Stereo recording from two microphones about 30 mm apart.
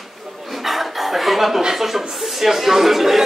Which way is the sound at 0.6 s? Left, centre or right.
Centre.